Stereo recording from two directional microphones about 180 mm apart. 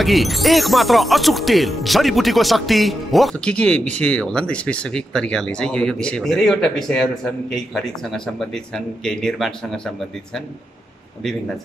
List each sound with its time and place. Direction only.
0.0 s speech: centre (ahead or behind)